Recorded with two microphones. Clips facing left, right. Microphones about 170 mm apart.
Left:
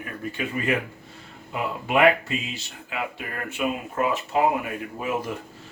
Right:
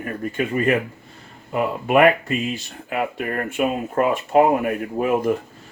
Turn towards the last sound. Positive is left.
turn(degrees=-55)  # may be behind; listen again after turning